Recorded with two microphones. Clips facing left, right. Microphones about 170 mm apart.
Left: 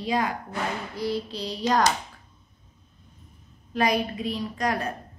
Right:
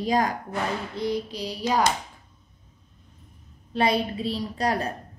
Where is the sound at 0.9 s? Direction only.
20° right (ahead or behind).